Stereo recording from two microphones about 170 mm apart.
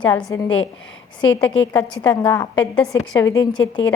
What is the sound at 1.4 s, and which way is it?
A woman's voice, 5° left (ahead or behind).